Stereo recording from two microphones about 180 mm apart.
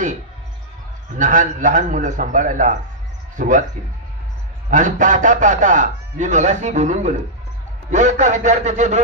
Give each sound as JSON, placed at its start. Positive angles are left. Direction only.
{"t": 1.1, "sound": "a man's voice", "side_deg": -45}
{"t": 4.6, "sound": "a man's voice", "side_deg": -45}